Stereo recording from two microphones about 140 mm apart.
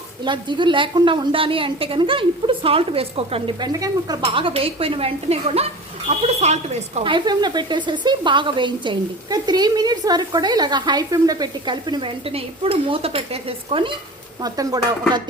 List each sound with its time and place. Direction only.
0.3 s speech: 35° right (ahead or behind)
3.6 s speech: 25° right (ahead or behind)
4.2 s speech: 40° right (ahead or behind)
7.0 s speech: 35° right (ahead or behind)
14.4 s speech: 25° right (ahead or behind)